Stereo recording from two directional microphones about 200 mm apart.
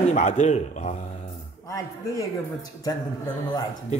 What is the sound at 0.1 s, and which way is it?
Speech, 35° left (ahead or behind).